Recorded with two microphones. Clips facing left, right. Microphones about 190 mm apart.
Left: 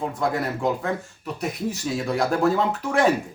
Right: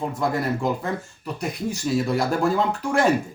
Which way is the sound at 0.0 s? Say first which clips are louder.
Even; centre (ahead or behind).